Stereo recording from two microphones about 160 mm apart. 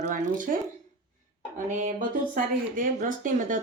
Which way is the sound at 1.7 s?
50° right (ahead or behind).